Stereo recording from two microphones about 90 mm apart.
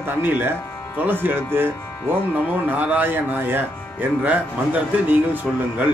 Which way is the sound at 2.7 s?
20° right (ahead or behind).